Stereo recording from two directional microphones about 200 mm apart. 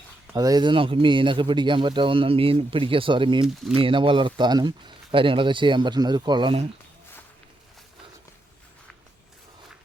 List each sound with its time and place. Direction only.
0.3 s speech: 20° right (ahead or behind)